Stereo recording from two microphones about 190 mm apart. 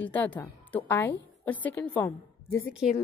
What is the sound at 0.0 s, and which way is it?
A woman's voice, 10° left (ahead or behind).